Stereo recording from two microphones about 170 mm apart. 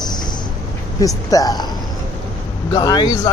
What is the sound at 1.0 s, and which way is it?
Speech, 20° left (ahead or behind).